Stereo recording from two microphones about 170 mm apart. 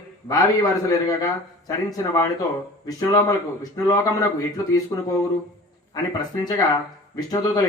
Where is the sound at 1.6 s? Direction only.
20° left (ahead or behind).